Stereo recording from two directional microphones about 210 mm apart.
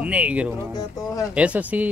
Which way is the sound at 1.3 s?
5° right (ahead or behind).